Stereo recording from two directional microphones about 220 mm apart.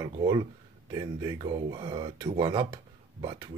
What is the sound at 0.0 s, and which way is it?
Speech, 20° right (ahead or behind).